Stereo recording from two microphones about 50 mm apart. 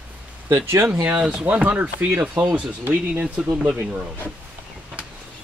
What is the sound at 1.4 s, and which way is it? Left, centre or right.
Speech, right.